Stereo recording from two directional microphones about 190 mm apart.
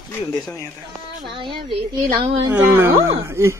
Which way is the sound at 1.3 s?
25° right (ahead or behind).